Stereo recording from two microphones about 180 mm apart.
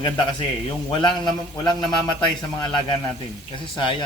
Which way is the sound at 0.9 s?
25° left (ahead or behind).